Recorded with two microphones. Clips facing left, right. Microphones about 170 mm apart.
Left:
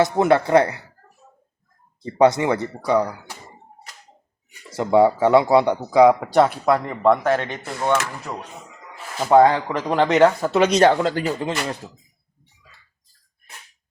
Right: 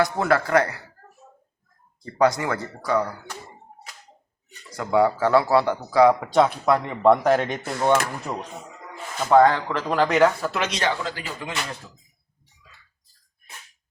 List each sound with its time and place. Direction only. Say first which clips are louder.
0.0 s speech: left 4 dB; 25° left (ahead or behind)
2.0 s speech: left 4 dB; 25° left (ahead or behind)
4.7 s speech: left 4 dB; 25° left (ahead or behind)
6.1 s speech: left 2 dB; 5° left (ahead or behind)
7.3 s speech: right 1 dB; 10° right (ahead or behind)
9.1 s speech: left 2 dB; 10° left (ahead or behind)
10.6 s speech: left 14 dB; 45° left (ahead or behind)
10.8 s speech: left 9 dB; 60° left (ahead or behind)
11.3 s speech: left 6 dB; 35° left (ahead or behind)